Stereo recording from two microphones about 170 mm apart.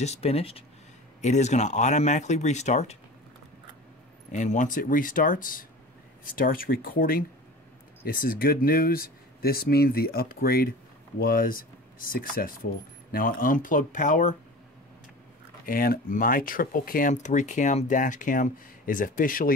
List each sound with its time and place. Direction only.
0.0 s speech: 40° left (ahead or behind)
4.3 s speech: 45° left (ahead or behind)
15.6 s speech: 60° left (ahead or behind)